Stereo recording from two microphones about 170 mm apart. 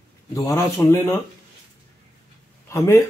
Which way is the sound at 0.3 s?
20° left (ahead or behind).